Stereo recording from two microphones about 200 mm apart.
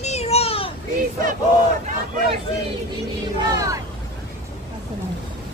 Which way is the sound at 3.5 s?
15° right (ahead or behind).